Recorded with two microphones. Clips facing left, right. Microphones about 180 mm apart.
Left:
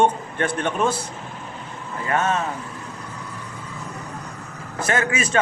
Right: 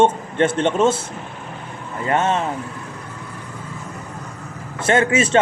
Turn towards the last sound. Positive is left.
turn(degrees=-25)  # may be behind; listen again after turning